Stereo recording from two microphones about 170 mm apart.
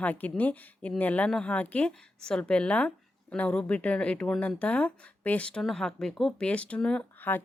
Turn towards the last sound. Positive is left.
turn(degrees=10)  # may be behind; listen again after turning